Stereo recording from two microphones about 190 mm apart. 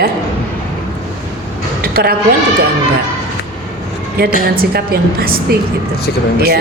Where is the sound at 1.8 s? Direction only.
50° right (ahead or behind).